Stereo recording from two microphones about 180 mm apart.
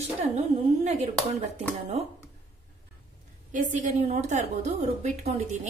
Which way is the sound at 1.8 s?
35° right (ahead or behind).